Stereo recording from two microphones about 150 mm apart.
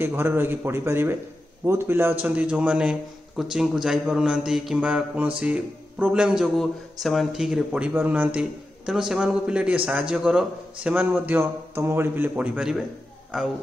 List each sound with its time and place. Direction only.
0.0 s a man's voice: 15° right (ahead or behind)